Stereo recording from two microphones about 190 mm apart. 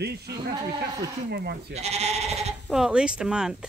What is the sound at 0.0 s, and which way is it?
Speech, 60° right (ahead or behind).